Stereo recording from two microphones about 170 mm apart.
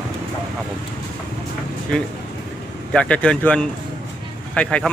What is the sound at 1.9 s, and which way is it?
A man's voice, 5° left (ahead or behind).